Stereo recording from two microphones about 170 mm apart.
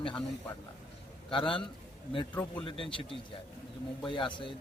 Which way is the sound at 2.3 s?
10° left (ahead or behind).